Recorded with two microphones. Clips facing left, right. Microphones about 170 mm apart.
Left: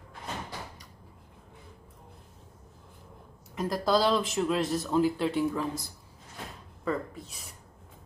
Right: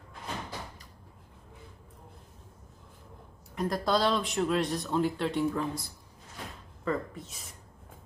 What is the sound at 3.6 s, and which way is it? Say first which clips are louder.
Speech: left 2 dB; centre (ahead or behind).